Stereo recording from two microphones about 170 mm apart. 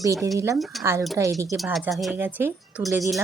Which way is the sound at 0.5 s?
Centre (ahead or behind).